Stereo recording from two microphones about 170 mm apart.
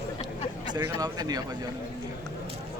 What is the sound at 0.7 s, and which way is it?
Speech, 20° right (ahead or behind).